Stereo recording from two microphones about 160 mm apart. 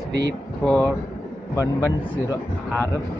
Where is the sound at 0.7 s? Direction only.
10° left (ahead or behind).